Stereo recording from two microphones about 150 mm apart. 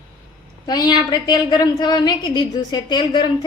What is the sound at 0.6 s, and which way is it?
A woman's voice, 25° left (ahead or behind).